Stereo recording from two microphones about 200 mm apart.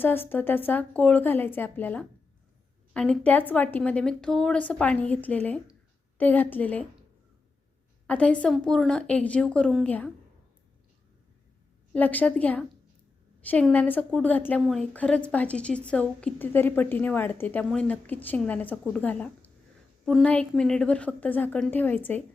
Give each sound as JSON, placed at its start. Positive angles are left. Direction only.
{"t": 0.0, "sound": "a woman's voice", "side_deg": 10}
{"t": 8.0, "sound": "a woman's voice", "side_deg": 5}
{"t": 11.9, "sound": "a woman's voice", "side_deg": 10}